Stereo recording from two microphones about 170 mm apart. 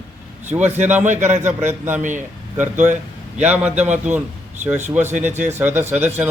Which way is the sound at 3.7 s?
40° right (ahead or behind).